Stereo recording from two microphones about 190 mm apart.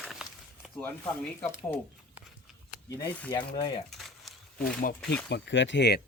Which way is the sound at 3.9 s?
Centre (ahead or behind).